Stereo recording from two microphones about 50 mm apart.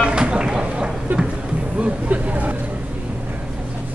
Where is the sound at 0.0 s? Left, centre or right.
Centre.